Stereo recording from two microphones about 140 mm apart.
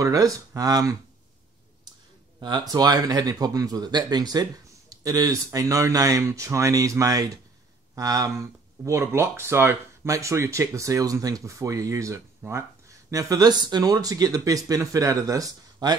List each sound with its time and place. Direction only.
0.0 s speech: 25° right (ahead or behind)
2.7 s speech: 30° right (ahead or behind)